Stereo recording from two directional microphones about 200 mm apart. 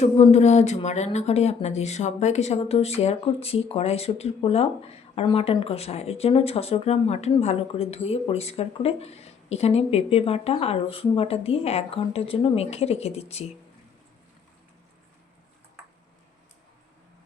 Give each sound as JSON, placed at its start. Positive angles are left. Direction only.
{"t": 0.0, "sound": "speech", "side_deg": 35}